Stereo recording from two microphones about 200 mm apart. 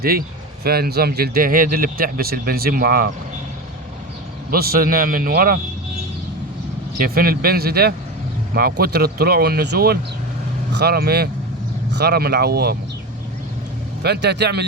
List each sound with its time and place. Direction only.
0.0 s speech: 50° right (ahead or behind)
4.5 s speech: 50° right (ahead or behind)
7.0 s speech: 45° right (ahead or behind)
14.0 s a man's voice: 55° right (ahead or behind)